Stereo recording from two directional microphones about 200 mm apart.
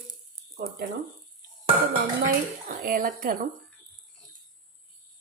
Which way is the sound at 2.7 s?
45° right (ahead or behind).